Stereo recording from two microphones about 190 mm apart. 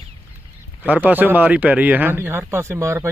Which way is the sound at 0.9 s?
10° right (ahead or behind).